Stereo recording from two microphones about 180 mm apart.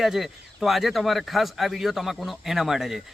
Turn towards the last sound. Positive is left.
turn(degrees=0)  # may be behind; listen again after turning